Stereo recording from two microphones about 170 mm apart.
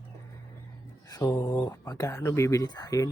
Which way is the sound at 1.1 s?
20° left (ahead or behind).